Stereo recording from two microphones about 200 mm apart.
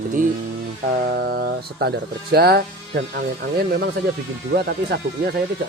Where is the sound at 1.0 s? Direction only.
50° right (ahead or behind).